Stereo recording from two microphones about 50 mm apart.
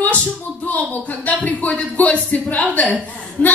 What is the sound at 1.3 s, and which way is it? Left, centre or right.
A woman's voice, left.